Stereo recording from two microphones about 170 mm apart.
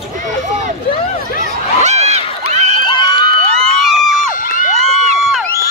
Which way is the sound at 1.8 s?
40° right (ahead or behind).